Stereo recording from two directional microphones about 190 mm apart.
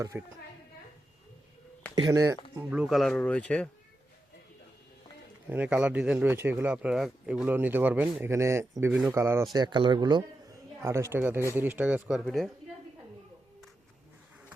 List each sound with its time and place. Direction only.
0.0 s speech: 15° right (ahead or behind)
2.0 s speech: 20° right (ahead or behind)
2.6 s speech: 5° right (ahead or behind)
5.5 s speech: 5° right (ahead or behind)